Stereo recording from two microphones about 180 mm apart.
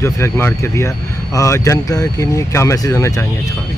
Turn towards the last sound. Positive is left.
turn(degrees=15)  # may be behind; listen again after turning